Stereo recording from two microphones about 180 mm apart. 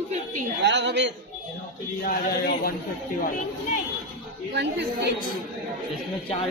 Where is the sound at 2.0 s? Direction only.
55° left (ahead or behind).